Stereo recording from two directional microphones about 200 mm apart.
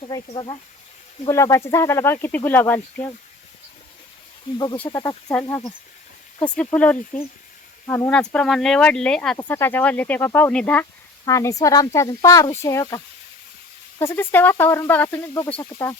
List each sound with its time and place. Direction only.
0.1 s speech: 25° left (ahead or behind)
4.5 s speech: 20° left (ahead or behind)
6.7 s speech: 5° left (ahead or behind)
14.0 s speech: 10° left (ahead or behind)